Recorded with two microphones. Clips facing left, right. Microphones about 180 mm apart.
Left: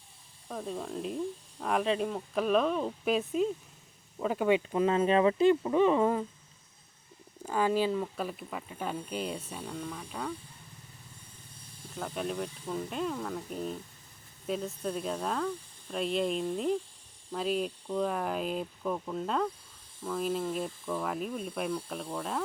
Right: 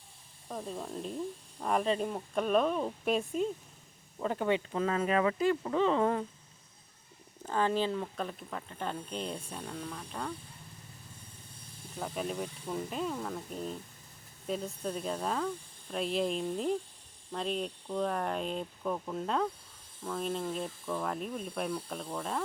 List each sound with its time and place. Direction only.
0.4 s speech: 5° right (ahead or behind)
4.2 s speech: 10° left (ahead or behind)
4.9 s speech: 25° left (ahead or behind)
5.6 s speech: 15° left (ahead or behind)
7.4 s speech: 10° left (ahead or behind)
11.9 s speech: centre (ahead or behind)